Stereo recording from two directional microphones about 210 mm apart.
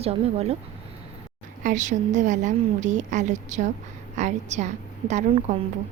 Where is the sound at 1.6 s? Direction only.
35° right (ahead or behind).